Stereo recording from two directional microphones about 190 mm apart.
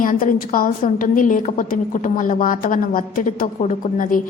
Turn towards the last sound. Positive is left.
turn(degrees=45)  # may be behind; listen again after turning